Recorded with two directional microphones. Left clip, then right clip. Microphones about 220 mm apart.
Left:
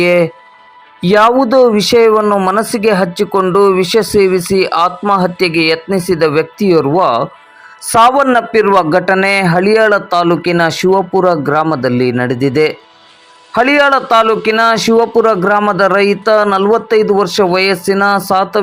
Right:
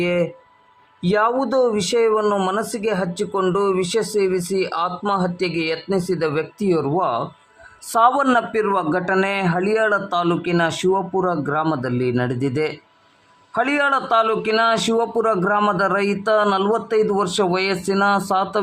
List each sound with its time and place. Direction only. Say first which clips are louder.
0.0 s a man's voice: left 10 dB; 25° left (ahead or behind)